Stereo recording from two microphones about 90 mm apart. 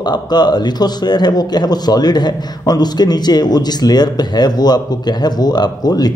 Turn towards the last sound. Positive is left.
turn(degrees=45)  # may be behind; listen again after turning